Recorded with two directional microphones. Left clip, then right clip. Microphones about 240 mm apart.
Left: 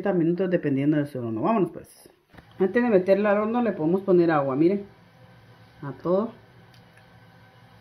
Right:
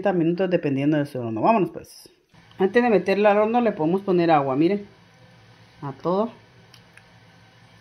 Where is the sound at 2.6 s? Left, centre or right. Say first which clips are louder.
Right 2 dB; right.